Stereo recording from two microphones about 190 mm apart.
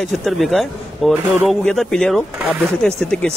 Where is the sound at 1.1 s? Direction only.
10° right (ahead or behind).